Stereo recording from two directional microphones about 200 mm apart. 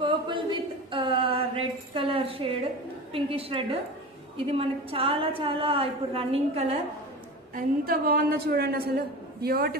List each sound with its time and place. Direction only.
0.0 s a sound: 25° right (ahead or behind)
4.5 s a woman's voice: 30° right (ahead or behind)
7.5 s a woman's voice: 45° right (ahead or behind)